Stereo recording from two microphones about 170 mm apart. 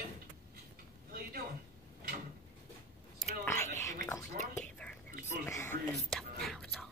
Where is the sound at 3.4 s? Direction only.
15° left (ahead or behind).